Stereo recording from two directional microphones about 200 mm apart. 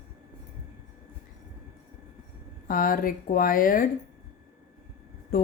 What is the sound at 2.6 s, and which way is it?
A woman's voice, 45° left (ahead or behind).